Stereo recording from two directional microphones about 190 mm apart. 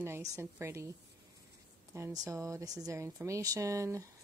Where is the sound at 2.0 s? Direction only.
15° right (ahead or behind).